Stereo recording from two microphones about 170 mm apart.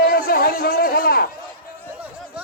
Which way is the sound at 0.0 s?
60° left (ahead or behind).